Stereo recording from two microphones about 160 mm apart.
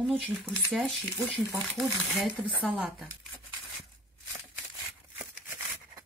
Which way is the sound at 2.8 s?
5° right (ahead or behind).